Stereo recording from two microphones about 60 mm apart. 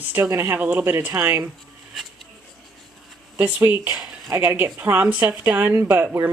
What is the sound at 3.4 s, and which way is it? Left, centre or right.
Speech, right.